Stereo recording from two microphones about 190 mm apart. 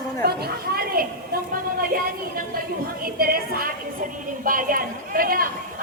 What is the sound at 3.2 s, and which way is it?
A woman's voice, 50° right (ahead or behind).